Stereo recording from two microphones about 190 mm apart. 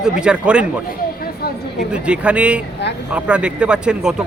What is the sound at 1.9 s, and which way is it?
Speech, 5° right (ahead or behind).